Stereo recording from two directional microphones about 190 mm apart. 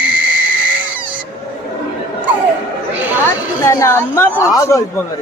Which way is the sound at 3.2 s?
15° left (ahead or behind).